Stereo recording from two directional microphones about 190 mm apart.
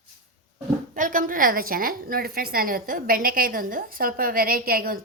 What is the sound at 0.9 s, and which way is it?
A woman's voice, 45° right (ahead or behind).